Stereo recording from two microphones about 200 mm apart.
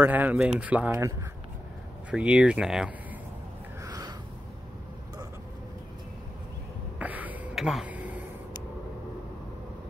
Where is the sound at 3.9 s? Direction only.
20° right (ahead or behind).